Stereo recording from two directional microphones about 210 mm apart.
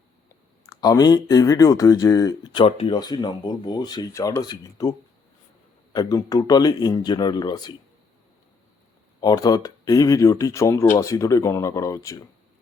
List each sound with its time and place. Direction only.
0.6 s speech: 15° left (ahead or behind)
9.2 s speech: 20° left (ahead or behind)